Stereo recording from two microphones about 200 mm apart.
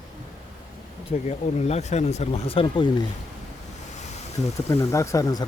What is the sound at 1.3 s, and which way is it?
Speech, 35° left (ahead or behind).